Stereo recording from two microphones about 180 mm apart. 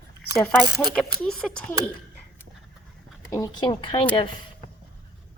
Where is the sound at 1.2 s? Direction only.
5° left (ahead or behind).